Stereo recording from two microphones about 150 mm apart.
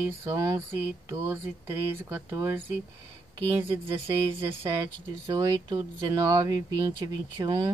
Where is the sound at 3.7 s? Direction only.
40° right (ahead or behind).